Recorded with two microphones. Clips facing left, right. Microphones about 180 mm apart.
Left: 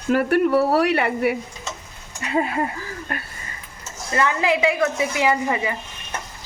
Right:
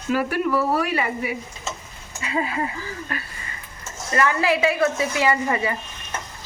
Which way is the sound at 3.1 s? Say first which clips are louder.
Left 2 dB; 50° left (ahead or behind).